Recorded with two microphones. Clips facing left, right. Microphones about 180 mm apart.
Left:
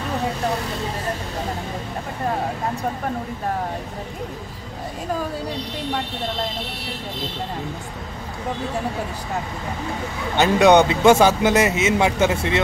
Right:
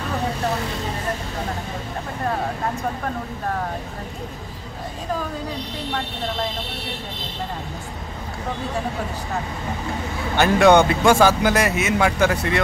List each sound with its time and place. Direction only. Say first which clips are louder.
10.3 s speech: even; 20° left (ahead or behind)